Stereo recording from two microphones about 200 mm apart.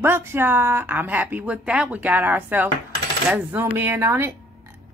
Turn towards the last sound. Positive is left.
turn(degrees=-10)  # may be behind; listen again after turning